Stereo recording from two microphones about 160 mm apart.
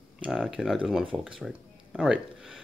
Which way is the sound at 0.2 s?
5° right (ahead or behind).